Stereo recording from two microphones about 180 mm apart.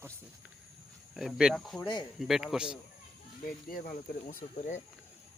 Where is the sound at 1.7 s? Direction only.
25° left (ahead or behind).